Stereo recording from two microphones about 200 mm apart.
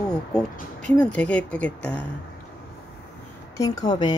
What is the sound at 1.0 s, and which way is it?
Speech, 5° left (ahead or behind).